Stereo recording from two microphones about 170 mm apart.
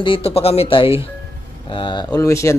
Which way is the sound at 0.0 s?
35° left (ahead or behind).